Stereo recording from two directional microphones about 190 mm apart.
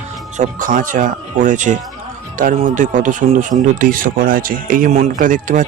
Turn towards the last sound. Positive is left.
turn(degrees=-45)  # may be behind; listen again after turning